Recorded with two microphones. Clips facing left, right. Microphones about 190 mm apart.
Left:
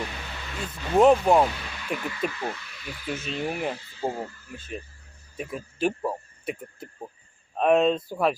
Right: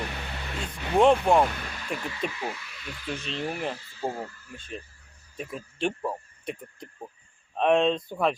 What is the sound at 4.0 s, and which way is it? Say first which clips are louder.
Speech: left 2 dB; 20° left (ahead or behind).